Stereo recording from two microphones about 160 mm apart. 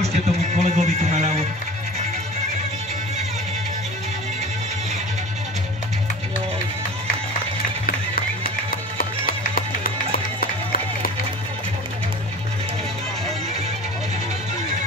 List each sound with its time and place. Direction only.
0.0 s music: 45° right (ahead or behind)
8.5 s music: 65° left (ahead or behind)